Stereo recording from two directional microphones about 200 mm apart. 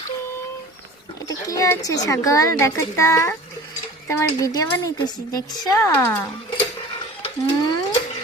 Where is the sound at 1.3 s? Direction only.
15° left (ahead or behind).